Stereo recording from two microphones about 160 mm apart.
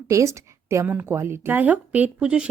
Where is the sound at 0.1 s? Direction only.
20° right (ahead or behind).